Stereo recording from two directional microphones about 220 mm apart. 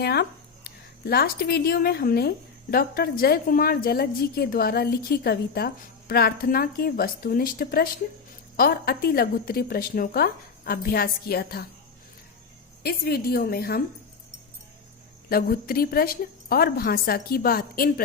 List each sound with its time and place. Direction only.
0.0 s speech: 45° left (ahead or behind)
12.8 s speech: 45° left (ahead or behind)
15.3 s speech: 45° left (ahead or behind)